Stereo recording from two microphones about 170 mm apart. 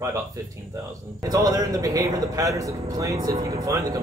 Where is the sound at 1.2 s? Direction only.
20° right (ahead or behind).